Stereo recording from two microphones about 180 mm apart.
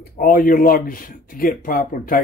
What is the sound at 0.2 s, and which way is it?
Speech, 55° left (ahead or behind).